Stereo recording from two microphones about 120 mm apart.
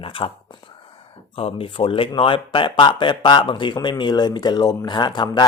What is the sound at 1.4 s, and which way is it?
Speech, 50° left (ahead or behind).